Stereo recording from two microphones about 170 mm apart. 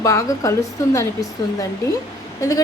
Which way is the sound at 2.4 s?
20° left (ahead or behind).